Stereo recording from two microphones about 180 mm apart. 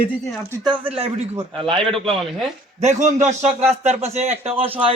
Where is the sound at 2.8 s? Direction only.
40° right (ahead or behind).